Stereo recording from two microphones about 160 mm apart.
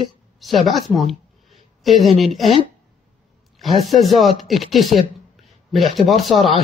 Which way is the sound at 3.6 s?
Centre (ahead or behind).